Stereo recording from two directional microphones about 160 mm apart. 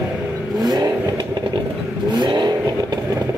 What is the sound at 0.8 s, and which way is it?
Vehicle, 20° right (ahead or behind).